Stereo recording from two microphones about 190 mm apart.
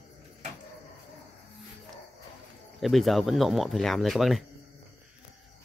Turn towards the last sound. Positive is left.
turn(degrees=0)  # may be behind; listen again after turning